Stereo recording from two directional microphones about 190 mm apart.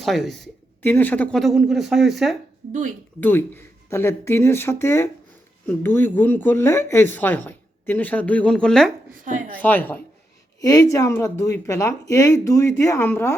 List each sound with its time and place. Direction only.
0.0 s speech: centre (ahead or behind)
3.2 s speech: 10° left (ahead or behind)